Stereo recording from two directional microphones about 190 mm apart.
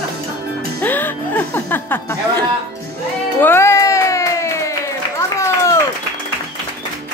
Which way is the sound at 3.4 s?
15° left (ahead or behind).